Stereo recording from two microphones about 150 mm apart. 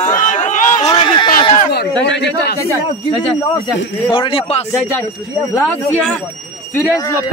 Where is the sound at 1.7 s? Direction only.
90° left.